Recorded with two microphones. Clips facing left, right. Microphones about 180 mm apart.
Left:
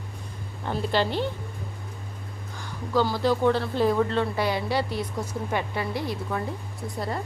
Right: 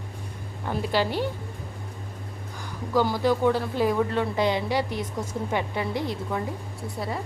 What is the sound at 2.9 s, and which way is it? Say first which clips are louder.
A woman's voice: right 1 dB; 15° right (ahead or behind).